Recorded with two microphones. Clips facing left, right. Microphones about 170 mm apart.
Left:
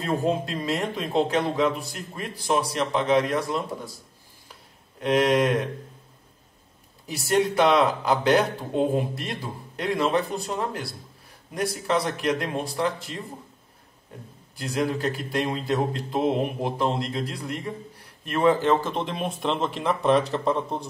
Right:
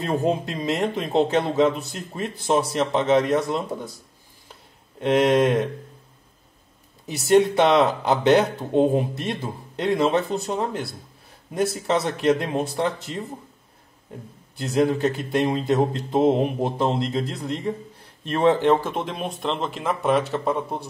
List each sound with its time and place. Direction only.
0.0 s speech: 20° right (ahead or behind)
5.0 s speech: 25° right (ahead or behind)
7.5 s speech: 25° right (ahead or behind)
14.6 s speech: 25° right (ahead or behind)
18.9 s speech: centre (ahead or behind)